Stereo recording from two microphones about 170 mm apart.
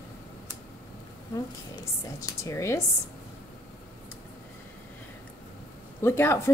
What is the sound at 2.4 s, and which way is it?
Speech, 15° left (ahead or behind).